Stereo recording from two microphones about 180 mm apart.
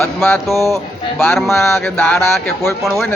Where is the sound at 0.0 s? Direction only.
10° left (ahead or behind).